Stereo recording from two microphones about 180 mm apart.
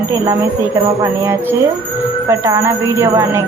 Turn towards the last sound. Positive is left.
turn(degrees=-15)  # may be behind; listen again after turning